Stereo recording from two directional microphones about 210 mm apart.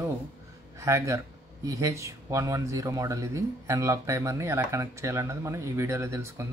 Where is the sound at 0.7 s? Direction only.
15° right (ahead or behind).